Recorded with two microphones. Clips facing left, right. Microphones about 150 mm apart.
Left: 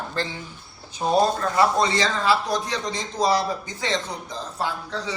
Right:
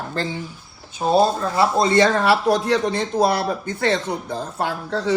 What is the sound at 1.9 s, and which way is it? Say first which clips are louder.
Speech: right 6 dB; 55° right (ahead or behind).